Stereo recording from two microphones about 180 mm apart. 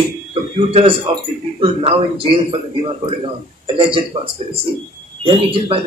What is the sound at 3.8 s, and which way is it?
Speech, 30° right (ahead or behind).